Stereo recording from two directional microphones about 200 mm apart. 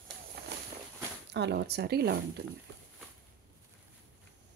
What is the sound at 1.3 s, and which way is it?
Speech, 60° right (ahead or behind).